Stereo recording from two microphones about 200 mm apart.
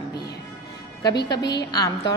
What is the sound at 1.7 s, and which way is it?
Speech, 20° left (ahead or behind).